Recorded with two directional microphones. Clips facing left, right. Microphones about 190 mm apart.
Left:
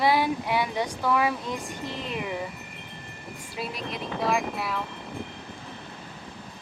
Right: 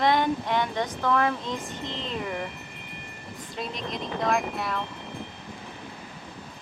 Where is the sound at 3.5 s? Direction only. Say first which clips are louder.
Even; 5° left (ahead or behind).